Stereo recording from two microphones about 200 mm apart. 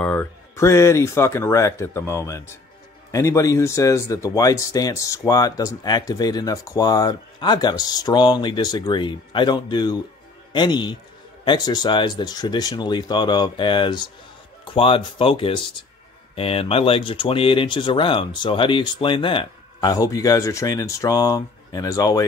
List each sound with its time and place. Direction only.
0.0 s speech: 10° left (ahead or behind)